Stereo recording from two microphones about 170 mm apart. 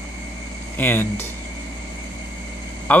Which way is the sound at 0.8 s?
15° left (ahead or behind).